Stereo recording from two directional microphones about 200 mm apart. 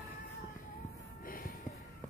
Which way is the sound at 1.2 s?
45° left (ahead or behind).